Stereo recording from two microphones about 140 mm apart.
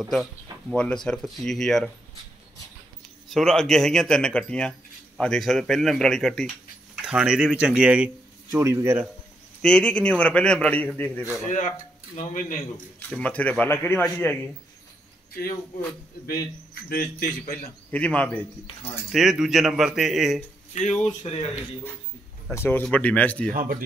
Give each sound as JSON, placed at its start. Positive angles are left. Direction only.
{"t": 0.1, "sound": "a sound", "side_deg": 0}
{"t": 0.8, "sound": "a man's voice", "side_deg": 5}
{"t": 3.3, "sound": "a man's voice", "side_deg": 0}
{"t": 8.5, "sound": "a man's voice", "side_deg": -20}
{"t": 9.6, "sound": "a man's voice", "side_deg": 5}
{"t": 12.2, "sound": "speech", "side_deg": 60}
{"t": 13.1, "sound": "a man's voice", "side_deg": 10}
{"t": 16.9, "sound": "a man's voice", "side_deg": 90}
{"t": 17.9, "sound": "a man's voice", "side_deg": 10}
{"t": 19.1, "sound": "a man's voice", "side_deg": -5}
{"t": 20.7, "sound": "speech", "side_deg": 55}
{"t": 22.5, "sound": "a man's voice", "side_deg": 15}
{"t": 23.5, "sound": "a man's voice", "side_deg": -80}